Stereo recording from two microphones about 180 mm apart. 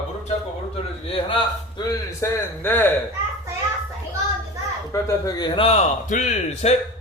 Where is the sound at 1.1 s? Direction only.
30° left (ahead or behind); by 2.9 s 10° left (ahead or behind).